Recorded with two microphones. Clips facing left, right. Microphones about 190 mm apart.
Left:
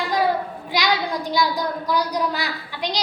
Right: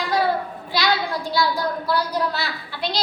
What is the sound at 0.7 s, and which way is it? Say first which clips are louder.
A woman's voice: even; 15° left (ahead or behind).